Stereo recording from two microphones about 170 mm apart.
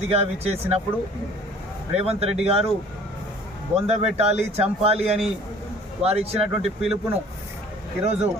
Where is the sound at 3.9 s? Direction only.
40° right (ahead or behind).